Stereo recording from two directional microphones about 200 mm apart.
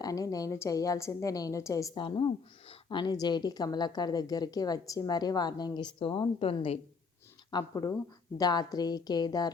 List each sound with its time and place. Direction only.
0.0 s a woman's voice: 15° left (ahead or behind)
7.5 s a woman's voice: 15° left (ahead or behind)